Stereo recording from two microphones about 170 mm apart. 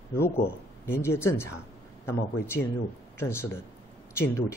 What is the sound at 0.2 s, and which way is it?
Speech, 15° left (ahead or behind).